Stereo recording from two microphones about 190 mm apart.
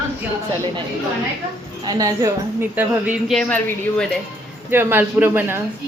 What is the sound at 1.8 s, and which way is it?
A man's voice, 15° right (ahead or behind).